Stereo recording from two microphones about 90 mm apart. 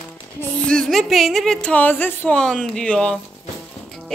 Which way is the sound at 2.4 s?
10° left (ahead or behind).